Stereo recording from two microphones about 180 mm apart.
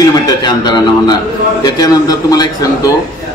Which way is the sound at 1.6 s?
20° left (ahead or behind).